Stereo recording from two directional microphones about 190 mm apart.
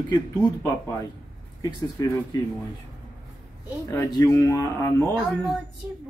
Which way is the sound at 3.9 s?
15° left (ahead or behind).